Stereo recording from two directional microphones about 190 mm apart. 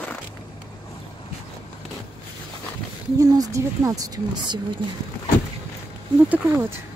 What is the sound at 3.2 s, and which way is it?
Speech, 15° right (ahead or behind).